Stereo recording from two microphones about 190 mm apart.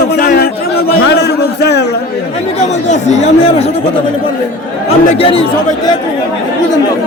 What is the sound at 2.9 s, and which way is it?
Speech, 40° left (ahead or behind).